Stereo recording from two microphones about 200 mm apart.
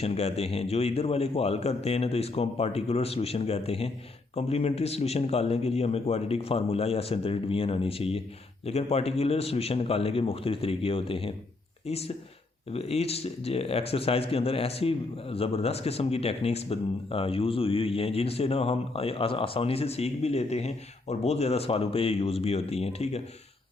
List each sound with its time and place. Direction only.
0.0 s a man's voice: 30° left (ahead or behind)